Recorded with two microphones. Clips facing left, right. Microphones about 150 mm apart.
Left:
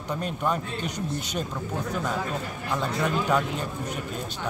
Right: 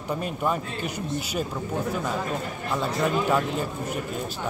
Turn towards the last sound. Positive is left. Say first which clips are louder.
# right 1 dB
turn(degrees=-5)  # may be behind; listen again after turning